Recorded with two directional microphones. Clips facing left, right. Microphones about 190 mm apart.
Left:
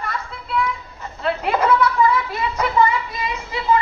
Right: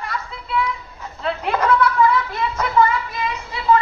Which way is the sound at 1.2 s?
5° left (ahead or behind).